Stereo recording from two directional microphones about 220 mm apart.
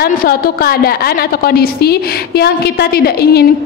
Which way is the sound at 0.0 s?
40° left (ahead or behind).